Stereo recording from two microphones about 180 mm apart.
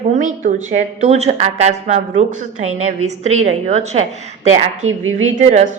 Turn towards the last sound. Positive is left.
turn(degrees=-40)  # may be behind; listen again after turning